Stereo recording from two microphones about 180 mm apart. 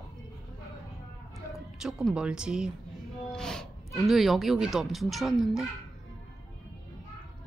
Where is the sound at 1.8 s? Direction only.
5° right (ahead or behind).